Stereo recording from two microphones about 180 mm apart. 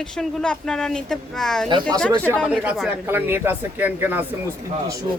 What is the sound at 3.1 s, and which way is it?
A man's voice, 10° right (ahead or behind).